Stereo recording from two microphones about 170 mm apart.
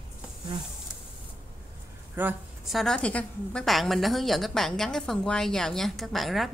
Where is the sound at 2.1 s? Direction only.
10° right (ahead or behind).